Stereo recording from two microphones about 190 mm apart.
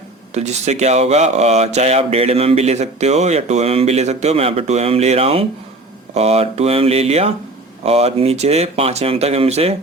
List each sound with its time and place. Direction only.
0.3 s speech: 35° right (ahead or behind)